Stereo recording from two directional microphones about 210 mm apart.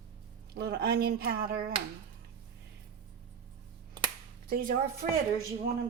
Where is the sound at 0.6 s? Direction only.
50° right (ahead or behind).